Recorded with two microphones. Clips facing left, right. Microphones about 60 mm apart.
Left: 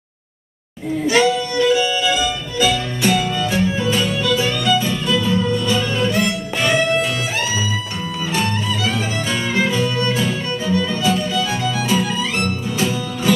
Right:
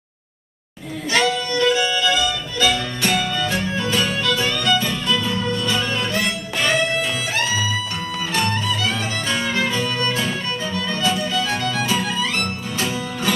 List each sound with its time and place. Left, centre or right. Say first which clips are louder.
1.0 s music: left 3 dB; centre